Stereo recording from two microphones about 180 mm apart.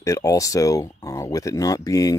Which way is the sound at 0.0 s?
20° left (ahead or behind).